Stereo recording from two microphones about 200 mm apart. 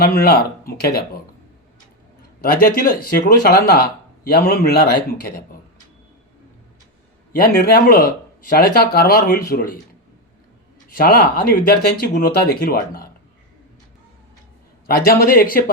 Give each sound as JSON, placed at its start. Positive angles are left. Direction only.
{"t": 0.0, "sound": "speech", "side_deg": 50}
{"t": 2.4, "sound": "speech", "side_deg": 45}
{"t": 7.3, "sound": "speech", "side_deg": 50}
{"t": 10.8, "sound": "speech", "side_deg": 45}
{"t": 14.8, "sound": "speech", "side_deg": 50}